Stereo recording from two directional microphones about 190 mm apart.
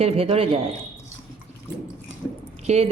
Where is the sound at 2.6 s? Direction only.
35° right (ahead or behind).